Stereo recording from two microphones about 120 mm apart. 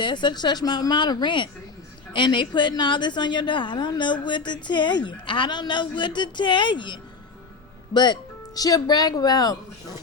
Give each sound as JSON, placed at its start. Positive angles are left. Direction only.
{"t": 0.0, "sound": "a woman's voice", "side_deg": 40}